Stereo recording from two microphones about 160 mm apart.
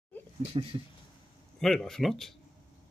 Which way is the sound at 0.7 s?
35° right (ahead or behind).